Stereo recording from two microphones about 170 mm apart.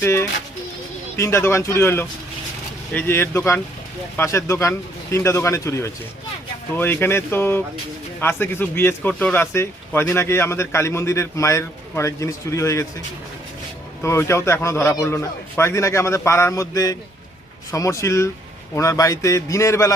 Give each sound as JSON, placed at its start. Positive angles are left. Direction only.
{"t": 0.0, "sound": "speech", "side_deg": 15}
{"t": 14.0, "sound": "a man's voice", "side_deg": 15}